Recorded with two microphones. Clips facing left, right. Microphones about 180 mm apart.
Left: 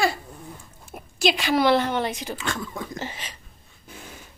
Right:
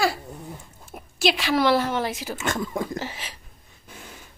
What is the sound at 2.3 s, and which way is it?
Speech, 45° right (ahead or behind).